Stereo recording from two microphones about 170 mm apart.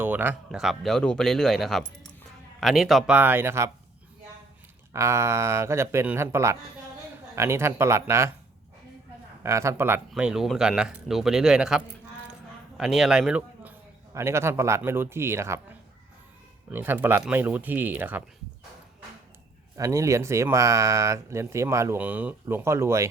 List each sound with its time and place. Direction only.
0.0 s speech: 10° right (ahead or behind)
4.9 s speech: 15° right (ahead or behind)
9.4 s a man's voice: 15° right (ahead or behind)
16.6 s speech: 10° right (ahead or behind)
19.7 s speech: 20° right (ahead or behind)